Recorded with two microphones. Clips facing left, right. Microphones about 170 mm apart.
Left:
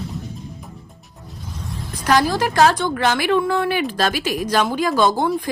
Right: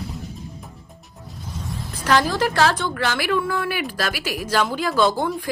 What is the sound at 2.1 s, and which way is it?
A woman's voice, 15° left (ahead or behind).